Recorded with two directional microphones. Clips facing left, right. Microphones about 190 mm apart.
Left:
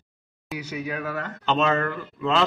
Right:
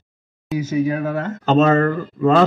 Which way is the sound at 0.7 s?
35° right (ahead or behind).